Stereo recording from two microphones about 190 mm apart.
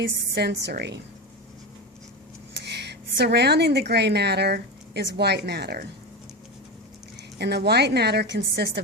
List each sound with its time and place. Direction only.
0.0 s a woman's voice: 60° right (ahead or behind)
2.5 s a woman's voice: 65° right (ahead or behind)
7.3 s a woman's voice: 60° right (ahead or behind)